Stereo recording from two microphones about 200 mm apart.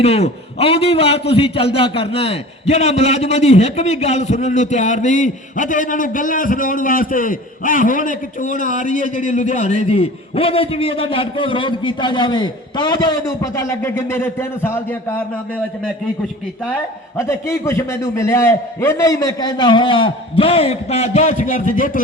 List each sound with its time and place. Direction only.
0.0 s a man's voice: 30° left (ahead or behind); by 15.6 s 10° left (ahead or behind)
17.2 s a man's voice: 15° left (ahead or behind); by 22.0 s 40° left (ahead or behind)